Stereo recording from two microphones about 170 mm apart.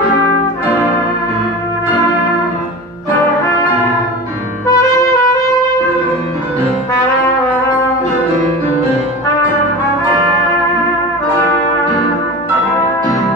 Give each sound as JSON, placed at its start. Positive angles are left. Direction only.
{"t": 4.6, "sound": "trumpet", "side_deg": 20}